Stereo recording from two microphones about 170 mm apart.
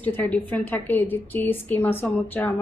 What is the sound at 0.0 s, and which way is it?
A woman's voice, 10° left (ahead or behind).